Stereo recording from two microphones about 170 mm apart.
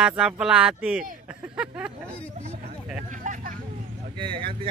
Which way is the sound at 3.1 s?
50° right (ahead or behind).